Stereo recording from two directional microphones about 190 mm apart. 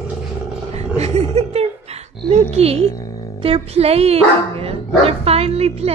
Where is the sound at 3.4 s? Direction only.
30° right (ahead or behind).